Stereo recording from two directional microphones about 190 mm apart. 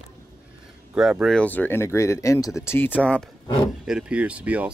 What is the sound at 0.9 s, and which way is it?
Speech, 5° right (ahead or behind).